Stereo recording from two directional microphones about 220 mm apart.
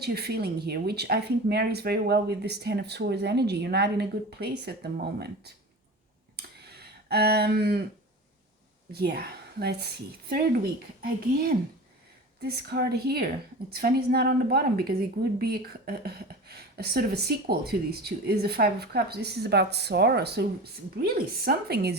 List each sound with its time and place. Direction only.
0.0 s a woman's voice: 45° right (ahead or behind)
6.3 s a sound: 45° right (ahead or behind)
8.9 s a woman's voice: 45° right (ahead or behind)